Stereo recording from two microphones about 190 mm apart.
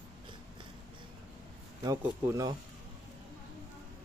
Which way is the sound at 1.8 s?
20° right (ahead or behind).